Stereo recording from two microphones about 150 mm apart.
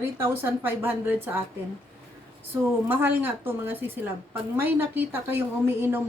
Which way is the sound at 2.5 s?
15° right (ahead or behind).